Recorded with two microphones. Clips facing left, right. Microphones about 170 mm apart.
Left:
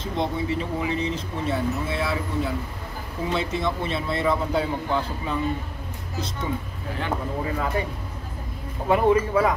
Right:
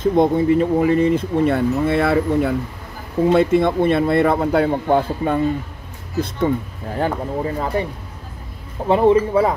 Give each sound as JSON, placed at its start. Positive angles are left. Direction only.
{"t": 0.0, "sound": "a man's voice", "side_deg": -50}
{"t": 7.0, "sound": "speech", "side_deg": -35}
{"t": 8.8, "sound": "speech", "side_deg": -25}